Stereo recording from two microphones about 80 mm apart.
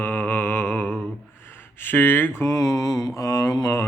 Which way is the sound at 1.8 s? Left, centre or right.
Left.